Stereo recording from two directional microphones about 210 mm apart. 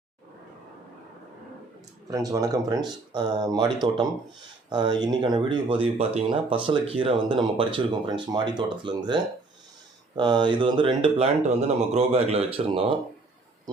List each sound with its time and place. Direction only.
2.0 s speech: 15° right (ahead or behind)